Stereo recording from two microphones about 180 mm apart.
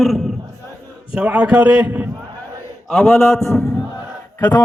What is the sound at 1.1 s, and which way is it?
Speech, 5° right (ahead or behind).